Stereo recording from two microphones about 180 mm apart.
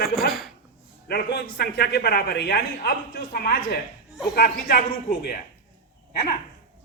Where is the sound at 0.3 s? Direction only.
Centre (ahead or behind).